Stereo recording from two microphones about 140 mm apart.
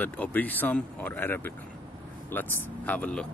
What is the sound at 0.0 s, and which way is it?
Speech, 10° left (ahead or behind).